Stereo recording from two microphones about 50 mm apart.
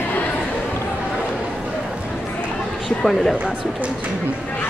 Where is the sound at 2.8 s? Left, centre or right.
Centre.